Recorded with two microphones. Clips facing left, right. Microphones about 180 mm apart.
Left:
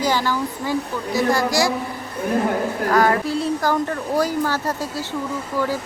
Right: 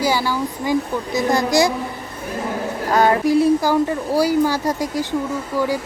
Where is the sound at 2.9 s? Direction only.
25° right (ahead or behind).